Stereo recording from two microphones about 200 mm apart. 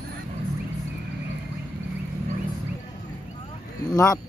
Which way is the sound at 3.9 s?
15° left (ahead or behind).